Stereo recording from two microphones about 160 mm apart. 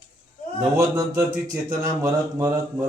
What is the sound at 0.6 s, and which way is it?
A man's voice, 20° right (ahead or behind).